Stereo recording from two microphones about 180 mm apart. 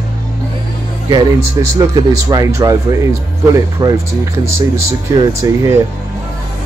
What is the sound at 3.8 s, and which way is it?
Speech, 20° right (ahead or behind).